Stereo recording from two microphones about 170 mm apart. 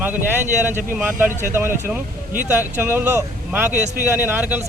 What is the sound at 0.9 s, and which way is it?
Speech, 5° right (ahead or behind).